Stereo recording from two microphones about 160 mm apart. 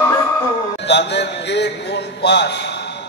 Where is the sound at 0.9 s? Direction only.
90° left.